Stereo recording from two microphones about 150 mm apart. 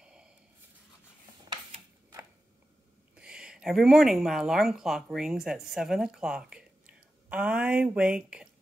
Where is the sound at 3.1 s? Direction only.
5° right (ahead or behind).